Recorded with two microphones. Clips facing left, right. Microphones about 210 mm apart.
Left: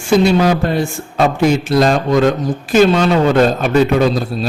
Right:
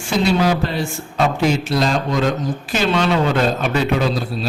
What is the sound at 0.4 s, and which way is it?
A man's voice, 50° left (ahead or behind).